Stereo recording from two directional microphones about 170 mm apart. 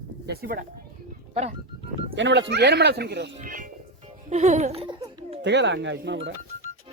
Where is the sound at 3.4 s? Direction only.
50° right (ahead or behind).